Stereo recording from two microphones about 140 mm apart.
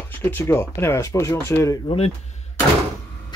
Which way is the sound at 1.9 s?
50° left (ahead or behind).